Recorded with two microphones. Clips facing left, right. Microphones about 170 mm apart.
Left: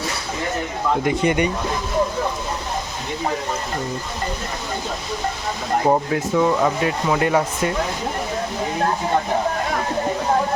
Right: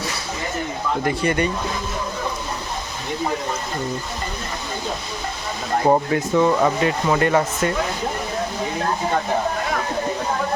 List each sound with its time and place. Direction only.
1.0 s speech: 15° left (ahead or behind)
5.8 s speech: centre (ahead or behind)